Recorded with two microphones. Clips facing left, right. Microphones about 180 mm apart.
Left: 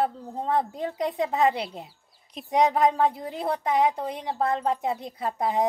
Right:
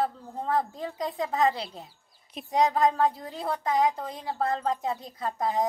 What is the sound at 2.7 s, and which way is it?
Speech, 25° left (ahead or behind).